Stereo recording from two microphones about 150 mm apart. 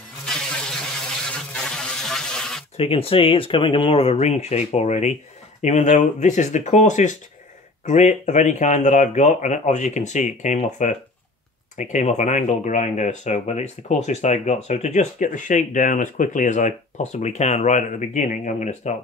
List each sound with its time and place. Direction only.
0.3 s vehicle: 5° left (ahead or behind)
1.5 s a sound: 5° left (ahead or behind)
2.8 s speech: 40° left (ahead or behind)